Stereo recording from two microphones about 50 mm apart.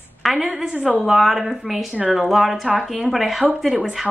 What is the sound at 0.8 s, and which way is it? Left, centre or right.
Speech, right.